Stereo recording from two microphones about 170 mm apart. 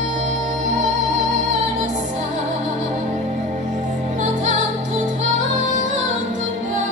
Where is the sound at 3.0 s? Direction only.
45° right (ahead or behind).